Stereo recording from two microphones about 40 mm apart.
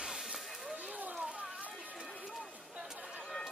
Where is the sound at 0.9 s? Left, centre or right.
Right.